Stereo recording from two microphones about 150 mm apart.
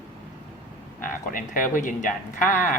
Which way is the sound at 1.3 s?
65° left (ahead or behind).